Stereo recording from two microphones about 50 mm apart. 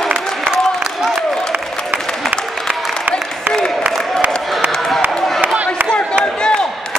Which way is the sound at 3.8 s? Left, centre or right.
Right.